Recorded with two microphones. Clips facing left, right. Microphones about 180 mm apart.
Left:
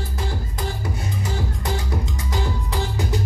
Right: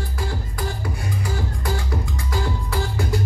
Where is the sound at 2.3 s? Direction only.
20° left (ahead or behind).